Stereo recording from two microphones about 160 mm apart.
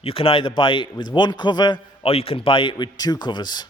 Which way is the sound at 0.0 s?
35° left (ahead or behind).